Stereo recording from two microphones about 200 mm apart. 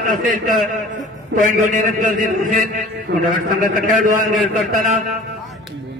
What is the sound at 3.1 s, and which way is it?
Speech, 60° right (ahead or behind).